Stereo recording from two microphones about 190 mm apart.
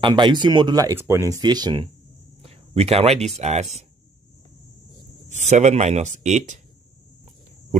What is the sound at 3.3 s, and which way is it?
Speech, 35° right (ahead or behind).